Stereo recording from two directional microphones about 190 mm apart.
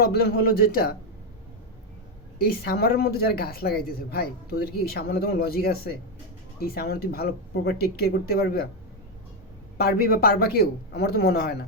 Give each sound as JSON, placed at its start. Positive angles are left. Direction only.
{"t": 0.1, "sound": "speech", "side_deg": 55}
{"t": 2.4, "sound": "speech", "side_deg": 55}
{"t": 9.7, "sound": "speech", "side_deg": 55}